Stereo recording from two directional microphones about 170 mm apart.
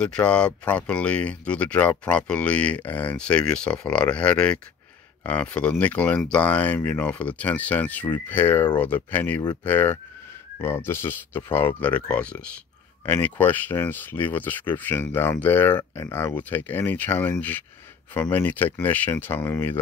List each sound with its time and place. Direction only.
0.0 s speech: 5° left (ahead or behind)
9.4 s speech: 25° left (ahead or behind)
9.7 s speech: 10° left (ahead or behind)